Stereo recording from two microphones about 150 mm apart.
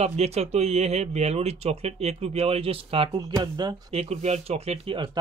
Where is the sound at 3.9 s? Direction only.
45° right (ahead or behind).